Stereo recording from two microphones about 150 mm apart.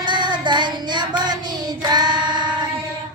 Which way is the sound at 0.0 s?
30° right (ahead or behind).